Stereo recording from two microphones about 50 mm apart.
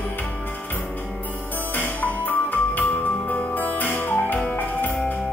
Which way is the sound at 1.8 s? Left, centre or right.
Left.